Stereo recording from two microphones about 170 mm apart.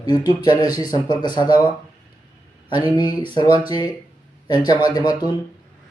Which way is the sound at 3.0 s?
25° left (ahead or behind).